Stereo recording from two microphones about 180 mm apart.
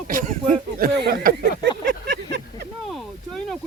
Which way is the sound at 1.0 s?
65° right (ahead or behind).